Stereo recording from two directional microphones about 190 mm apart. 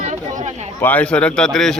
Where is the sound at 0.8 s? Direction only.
10° left (ahead or behind).